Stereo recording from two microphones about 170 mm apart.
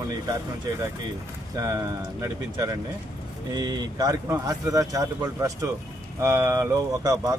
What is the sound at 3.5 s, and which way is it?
Speech, 25° right (ahead or behind).